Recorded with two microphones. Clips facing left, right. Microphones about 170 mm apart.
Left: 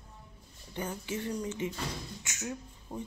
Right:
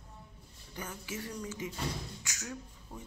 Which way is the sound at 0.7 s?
30° left (ahead or behind).